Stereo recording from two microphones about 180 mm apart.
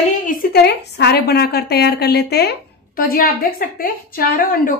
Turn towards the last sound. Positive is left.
turn(degrees=50)  # may be behind; listen again after turning